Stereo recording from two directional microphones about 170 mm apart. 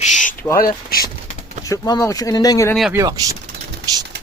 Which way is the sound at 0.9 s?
60° left (ahead or behind).